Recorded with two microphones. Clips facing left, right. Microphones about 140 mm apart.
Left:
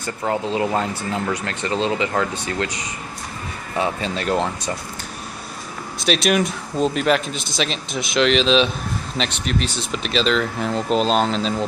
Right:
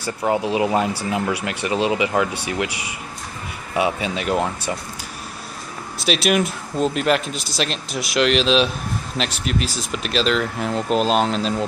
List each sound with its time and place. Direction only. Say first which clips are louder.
0.0 s speech: right 2 dB; 15° right (ahead or behind)
3.7 s speech: right 2 dB; 10° right (ahead or behind)
6.0 s speech: even; 5° right (ahead or behind)